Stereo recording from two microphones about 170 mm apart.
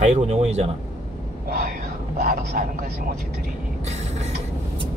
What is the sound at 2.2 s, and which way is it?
Speech, 50° right (ahead or behind).